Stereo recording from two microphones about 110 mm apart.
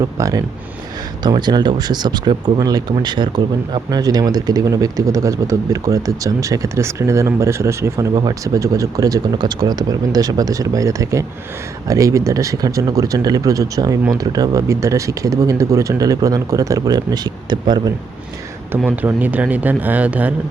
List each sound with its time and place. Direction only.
0.0 s speech: 30° right (ahead or behind)
1.2 s speech: 40° right (ahead or behind)
18.9 s speech: 15° right (ahead or behind)